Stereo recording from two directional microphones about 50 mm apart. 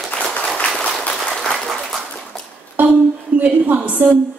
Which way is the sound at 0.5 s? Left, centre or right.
Centre.